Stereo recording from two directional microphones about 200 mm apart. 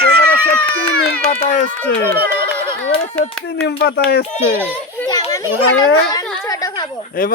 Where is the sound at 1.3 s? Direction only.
35° left (ahead or behind).